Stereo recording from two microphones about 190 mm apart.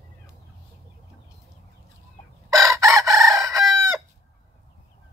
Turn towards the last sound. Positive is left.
turn(degrees=-15)  # may be behind; listen again after turning